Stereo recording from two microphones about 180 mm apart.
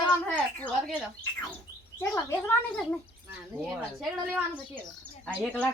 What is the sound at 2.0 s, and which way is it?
Speech, 15° left (ahead or behind).